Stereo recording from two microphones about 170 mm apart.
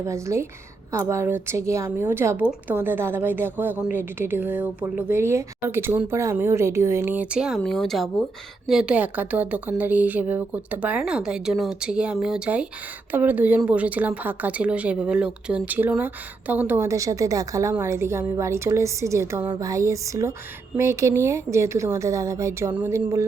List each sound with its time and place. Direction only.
0.0 s a woman's voice: 15° right (ahead or behind)
19.5 s music: 20° right (ahead or behind)
20.7 s a woman's voice: 15° right (ahead or behind)